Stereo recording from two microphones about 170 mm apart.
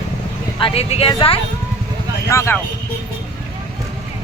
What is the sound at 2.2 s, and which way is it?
Speech, 15° left (ahead or behind).